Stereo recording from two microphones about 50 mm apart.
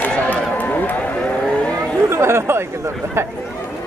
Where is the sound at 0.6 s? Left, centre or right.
Left.